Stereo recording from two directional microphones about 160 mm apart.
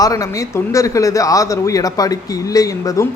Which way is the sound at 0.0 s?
20° left (ahead or behind).